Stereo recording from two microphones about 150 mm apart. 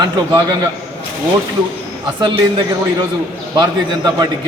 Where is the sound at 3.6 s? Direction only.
30° right (ahead or behind).